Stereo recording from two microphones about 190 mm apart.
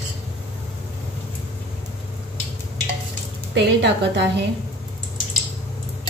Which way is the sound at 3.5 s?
65° right (ahead or behind).